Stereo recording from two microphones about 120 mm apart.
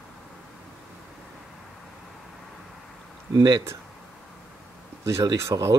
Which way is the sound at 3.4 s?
35° right (ahead or behind).